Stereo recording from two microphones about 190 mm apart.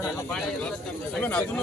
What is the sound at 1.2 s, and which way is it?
Speech, 5° left (ahead or behind).